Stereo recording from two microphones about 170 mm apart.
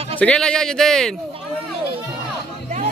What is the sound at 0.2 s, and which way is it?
Speech, 5° left (ahead or behind).